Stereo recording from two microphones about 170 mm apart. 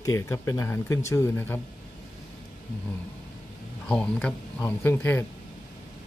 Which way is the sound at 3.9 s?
5° left (ahead or behind).